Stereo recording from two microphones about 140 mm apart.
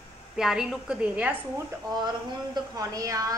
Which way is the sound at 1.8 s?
30° right (ahead or behind).